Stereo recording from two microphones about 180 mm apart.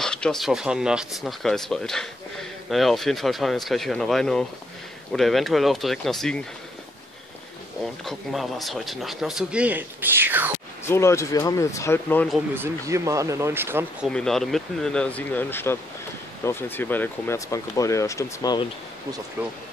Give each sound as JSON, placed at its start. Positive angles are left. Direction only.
{"t": 0.0, "sound": "speech", "side_deg": 5}
{"t": 7.8, "sound": "speech", "side_deg": 0}
{"t": 10.9, "sound": "speech", "side_deg": 15}
{"t": 12.5, "sound": "speech", "side_deg": -15}
{"t": 14.0, "sound": "speech", "side_deg": 0}